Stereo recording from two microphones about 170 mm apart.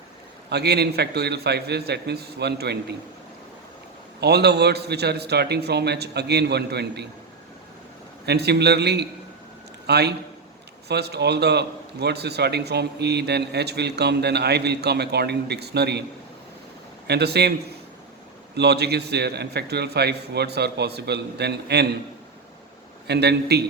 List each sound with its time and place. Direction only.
0.5 s a man's voice: 70° right (ahead or behind)
4.2 s a man's voice: 75° right (ahead or behind)
8.3 s a man's voice: 75° right (ahead or behind)
17.1 s a man's voice: 75° right (ahead or behind)
18.5 s a man's voice: 75° right (ahead or behind)
23.0 s a man's voice: 75° right (ahead or behind)